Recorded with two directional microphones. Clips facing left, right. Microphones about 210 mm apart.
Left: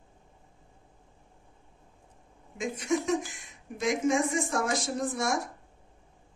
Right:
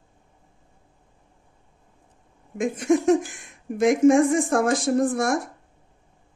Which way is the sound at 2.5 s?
55° right (ahead or behind).